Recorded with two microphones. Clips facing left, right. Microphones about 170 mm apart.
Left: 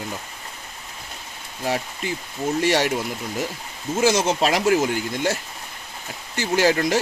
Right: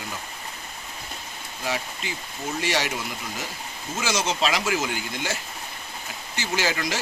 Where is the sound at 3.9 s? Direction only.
50° left (ahead or behind).